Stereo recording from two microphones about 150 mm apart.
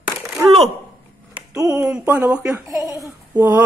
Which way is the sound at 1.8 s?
10° right (ahead or behind).